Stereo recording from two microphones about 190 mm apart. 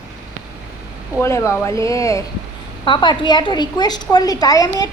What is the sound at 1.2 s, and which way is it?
A woman's voice, 15° left (ahead or behind).